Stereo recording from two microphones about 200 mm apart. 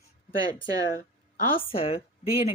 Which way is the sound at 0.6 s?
20° right (ahead or behind).